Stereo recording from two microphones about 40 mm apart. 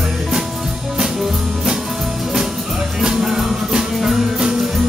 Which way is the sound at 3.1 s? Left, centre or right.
Centre.